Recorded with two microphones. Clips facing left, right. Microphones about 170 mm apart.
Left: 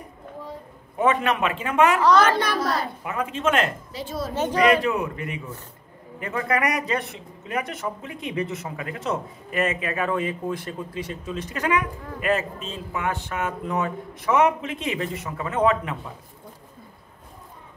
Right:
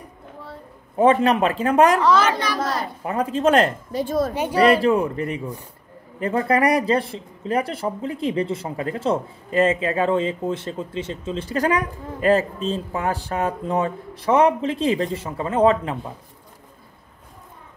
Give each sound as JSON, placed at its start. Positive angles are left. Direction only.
{"t": 0.9, "sound": "speech", "side_deg": -30}
{"t": 2.0, "sound": "a woman's voice", "side_deg": 0}
{"t": 2.2, "sound": "a child's voice", "side_deg": 55}
{"t": 3.0, "sound": "speech", "side_deg": -35}
{"t": 3.9, "sound": "a woman's voice", "side_deg": -50}
{"t": 4.6, "sound": "speech", "side_deg": -35}